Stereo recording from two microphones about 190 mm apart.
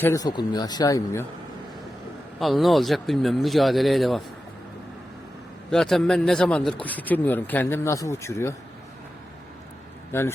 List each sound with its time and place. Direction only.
0.0 s speech: 15° left (ahead or behind)
2.4 s speech: centre (ahead or behind)
5.7 s speech: 5° left (ahead or behind)
10.1 s a man's voice: 10° left (ahead or behind)